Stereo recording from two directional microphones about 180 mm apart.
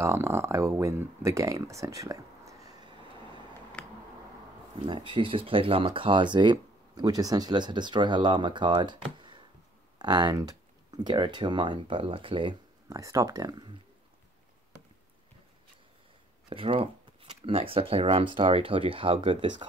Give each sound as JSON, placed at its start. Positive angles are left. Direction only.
{"t": 0.0, "sound": "speech", "side_deg": -15}
{"t": 3.8, "sound": "a sound", "side_deg": 5}
{"t": 4.8, "sound": "speech", "side_deg": -25}
{"t": 16.4, "sound": "speech", "side_deg": -30}